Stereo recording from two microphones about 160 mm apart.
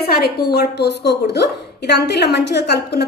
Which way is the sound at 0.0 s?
75° left (ahead or behind).